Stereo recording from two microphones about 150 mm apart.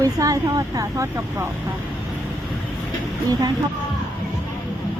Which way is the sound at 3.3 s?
25° right (ahead or behind).